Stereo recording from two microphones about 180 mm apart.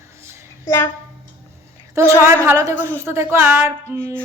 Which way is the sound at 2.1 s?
15° right (ahead or behind).